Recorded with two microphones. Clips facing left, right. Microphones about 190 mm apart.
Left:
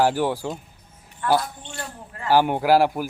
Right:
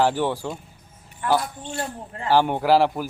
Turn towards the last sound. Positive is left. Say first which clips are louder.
# even
turn(degrees=10)  # may be behind; listen again after turning